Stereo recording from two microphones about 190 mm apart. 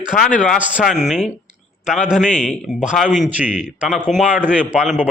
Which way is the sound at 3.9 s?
40° left (ahead or behind).